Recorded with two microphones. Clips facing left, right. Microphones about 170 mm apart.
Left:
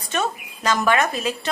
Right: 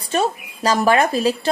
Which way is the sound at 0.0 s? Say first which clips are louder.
Right 5 dB; 35° right (ahead or behind).